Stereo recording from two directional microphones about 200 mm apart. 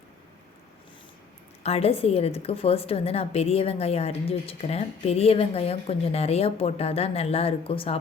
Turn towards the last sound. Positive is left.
turn(degrees=30)  # may be behind; listen again after turning